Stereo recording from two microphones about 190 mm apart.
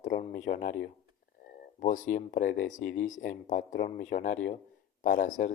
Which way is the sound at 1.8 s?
40° left (ahead or behind).